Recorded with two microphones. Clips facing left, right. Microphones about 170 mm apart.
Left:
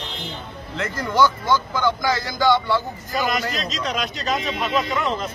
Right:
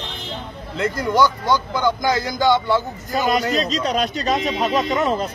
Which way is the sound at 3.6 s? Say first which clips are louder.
Right 5 dB; 40° right (ahead or behind).